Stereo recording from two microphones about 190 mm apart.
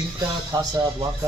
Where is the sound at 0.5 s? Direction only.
20° right (ahead or behind).